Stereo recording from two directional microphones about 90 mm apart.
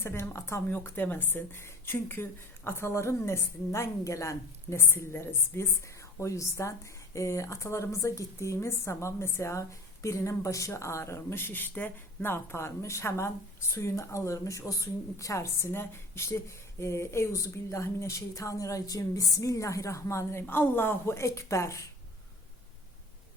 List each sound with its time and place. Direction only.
0.0 s a woman's voice: 30° left (ahead or behind)